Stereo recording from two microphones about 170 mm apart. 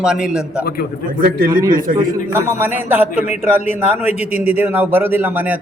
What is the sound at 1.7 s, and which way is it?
Speech, 55° right (ahead or behind).